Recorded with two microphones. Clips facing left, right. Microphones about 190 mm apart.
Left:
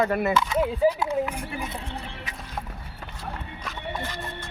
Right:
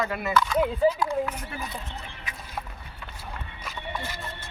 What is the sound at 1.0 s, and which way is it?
Speech, 20° left (ahead or behind).